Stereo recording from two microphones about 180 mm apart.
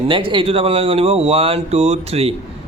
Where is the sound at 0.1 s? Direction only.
25° right (ahead or behind).